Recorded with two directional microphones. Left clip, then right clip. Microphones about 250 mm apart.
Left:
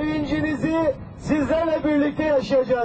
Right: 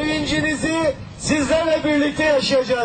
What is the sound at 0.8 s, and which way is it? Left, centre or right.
A man's voice, centre.